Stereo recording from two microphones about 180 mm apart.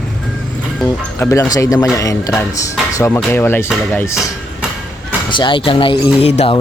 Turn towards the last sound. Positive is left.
turn(degrees=35)  # may be behind; listen again after turning